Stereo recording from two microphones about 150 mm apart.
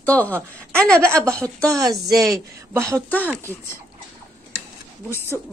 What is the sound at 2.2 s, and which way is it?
Speech, 15° right (ahead or behind).